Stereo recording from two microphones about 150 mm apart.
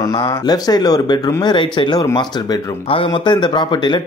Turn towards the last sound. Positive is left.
turn(degrees=30)  # may be behind; listen again after turning